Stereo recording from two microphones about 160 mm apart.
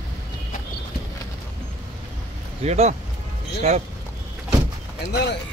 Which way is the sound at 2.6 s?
45° right (ahead or behind).